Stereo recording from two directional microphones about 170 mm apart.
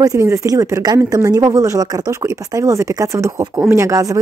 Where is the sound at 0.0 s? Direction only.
20° right (ahead or behind).